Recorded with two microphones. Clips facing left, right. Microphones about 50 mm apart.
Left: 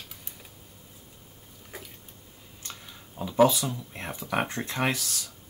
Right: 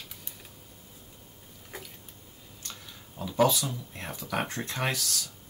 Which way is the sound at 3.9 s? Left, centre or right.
Centre.